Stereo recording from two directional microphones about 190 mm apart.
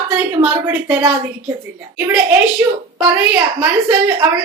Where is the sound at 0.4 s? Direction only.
15° right (ahead or behind).